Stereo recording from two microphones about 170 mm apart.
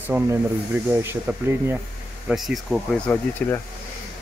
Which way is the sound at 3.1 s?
15° left (ahead or behind).